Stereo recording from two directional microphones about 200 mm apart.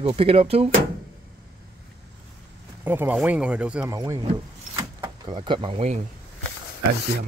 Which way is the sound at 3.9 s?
15° right (ahead or behind).